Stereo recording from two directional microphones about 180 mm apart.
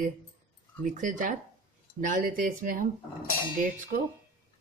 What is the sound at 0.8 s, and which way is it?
Speech, 45° right (ahead or behind).